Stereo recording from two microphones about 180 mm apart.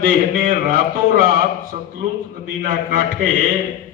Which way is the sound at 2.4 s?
50° right (ahead or behind).